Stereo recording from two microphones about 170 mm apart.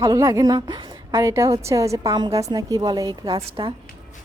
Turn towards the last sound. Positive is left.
turn(degrees=-30)  # may be behind; listen again after turning